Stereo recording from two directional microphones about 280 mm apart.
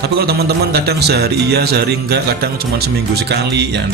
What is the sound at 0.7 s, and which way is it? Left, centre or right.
A man's voice, right.